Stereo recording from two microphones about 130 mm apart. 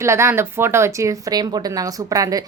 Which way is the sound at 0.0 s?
20° right (ahead or behind).